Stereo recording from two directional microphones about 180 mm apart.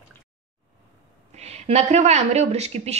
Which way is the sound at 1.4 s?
35° right (ahead or behind).